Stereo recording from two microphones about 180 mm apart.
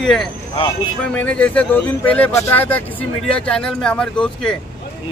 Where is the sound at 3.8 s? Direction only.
5° left (ahead or behind).